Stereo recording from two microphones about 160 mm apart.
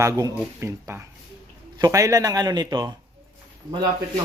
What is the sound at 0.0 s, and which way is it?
Speech, 20° right (ahead or behind).